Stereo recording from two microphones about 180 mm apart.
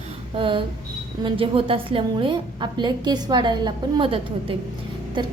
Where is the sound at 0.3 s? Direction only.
30° right (ahead or behind).